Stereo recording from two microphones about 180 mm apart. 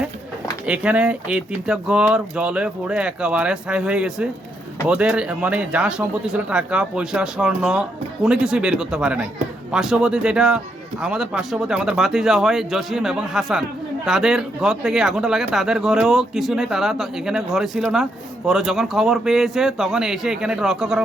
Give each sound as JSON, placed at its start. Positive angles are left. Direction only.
{"t": 0.6, "sound": "speech", "side_deg": -5}